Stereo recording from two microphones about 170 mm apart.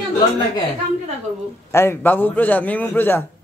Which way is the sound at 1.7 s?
15° left (ahead or behind).